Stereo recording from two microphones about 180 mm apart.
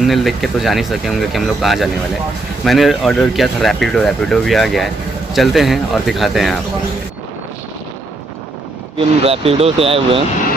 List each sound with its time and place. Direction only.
0.0 s speech: centre (ahead or behind)
9.2 s speech: 35° right (ahead or behind)